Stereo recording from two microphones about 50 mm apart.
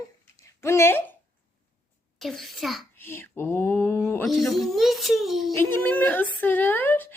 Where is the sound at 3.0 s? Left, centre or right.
Left.